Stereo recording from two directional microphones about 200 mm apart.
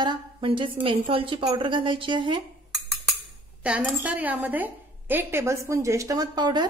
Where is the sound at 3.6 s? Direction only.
5° right (ahead or behind).